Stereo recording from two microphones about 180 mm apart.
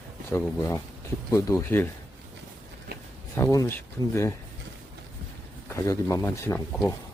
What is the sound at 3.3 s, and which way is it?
Speech, 20° left (ahead or behind).